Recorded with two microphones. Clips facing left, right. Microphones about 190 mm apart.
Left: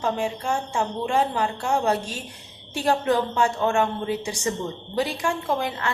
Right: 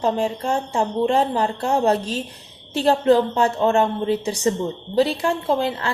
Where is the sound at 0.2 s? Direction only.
40° right (ahead or behind).